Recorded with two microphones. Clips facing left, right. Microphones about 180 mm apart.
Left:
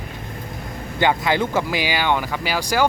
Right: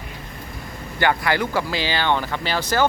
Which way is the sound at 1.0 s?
20° left (ahead or behind).